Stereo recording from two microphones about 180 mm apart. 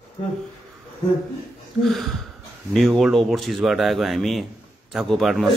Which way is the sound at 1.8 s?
Centre (ahead or behind).